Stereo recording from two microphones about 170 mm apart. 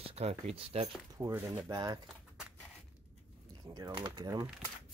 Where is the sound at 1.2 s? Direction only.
10° right (ahead or behind).